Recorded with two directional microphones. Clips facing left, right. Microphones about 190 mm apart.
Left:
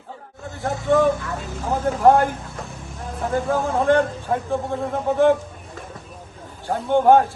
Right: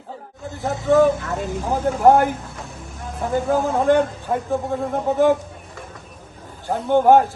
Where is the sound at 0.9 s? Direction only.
Centre (ahead or behind).